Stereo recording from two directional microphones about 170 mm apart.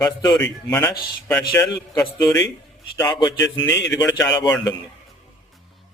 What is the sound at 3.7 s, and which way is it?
Speech, 90° left.